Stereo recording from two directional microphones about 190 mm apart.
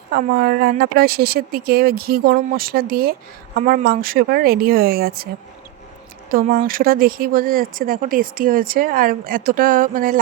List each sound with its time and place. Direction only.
0.1 s speech: 55° right (ahead or behind)
6.3 s speech: 50° right (ahead or behind)